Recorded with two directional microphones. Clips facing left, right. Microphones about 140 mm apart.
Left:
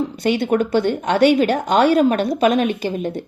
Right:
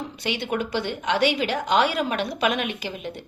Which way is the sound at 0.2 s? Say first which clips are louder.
Left 9 dB; 45° left (ahead or behind).